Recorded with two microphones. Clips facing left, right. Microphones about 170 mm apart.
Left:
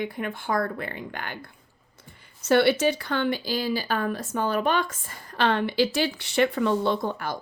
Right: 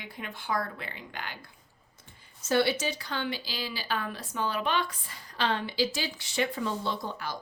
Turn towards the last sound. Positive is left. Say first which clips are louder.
# left 8 dB
turn(degrees=55)  # may be behind; listen again after turning